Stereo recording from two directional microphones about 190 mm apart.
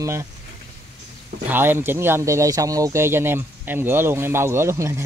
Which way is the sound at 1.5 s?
10° right (ahead or behind).